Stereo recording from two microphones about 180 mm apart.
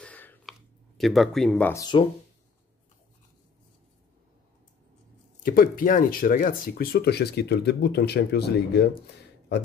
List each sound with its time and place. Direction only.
0.0 s a sound: 10° left (ahead or behind)
1.7 s speech: 20° left (ahead or behind)
5.4 s speech: 50° left (ahead or behind)